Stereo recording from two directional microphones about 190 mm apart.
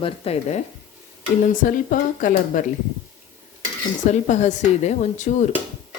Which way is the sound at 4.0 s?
40° left (ahead or behind).